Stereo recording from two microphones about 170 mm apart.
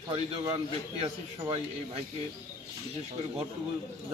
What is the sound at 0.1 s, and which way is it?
A man's voice, 30° right (ahead or behind).